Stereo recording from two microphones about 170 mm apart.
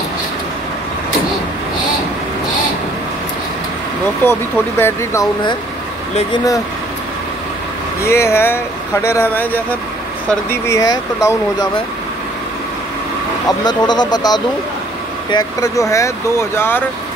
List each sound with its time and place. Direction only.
4.2 s speech: 15° left (ahead or behind)
6.3 s speech: 20° left (ahead or behind)
8.0 s speech: 15° left (ahead or behind)
13.5 s speech: 25° left (ahead or behind)